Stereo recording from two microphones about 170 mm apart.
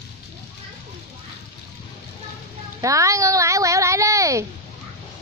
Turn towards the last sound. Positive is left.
turn(degrees=-20)  # may be behind; listen again after turning